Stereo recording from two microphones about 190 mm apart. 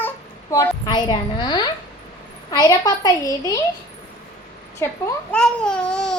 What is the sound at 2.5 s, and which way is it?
A woman's voice, 20° left (ahead or behind).